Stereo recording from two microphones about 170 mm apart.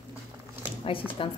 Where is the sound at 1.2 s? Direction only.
30° left (ahead or behind).